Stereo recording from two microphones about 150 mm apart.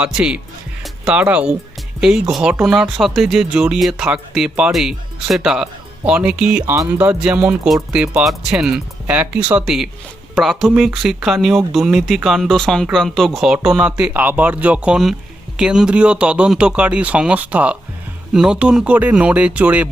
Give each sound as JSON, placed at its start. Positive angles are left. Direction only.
{"t": 0.0, "sound": "speech", "side_deg": -5}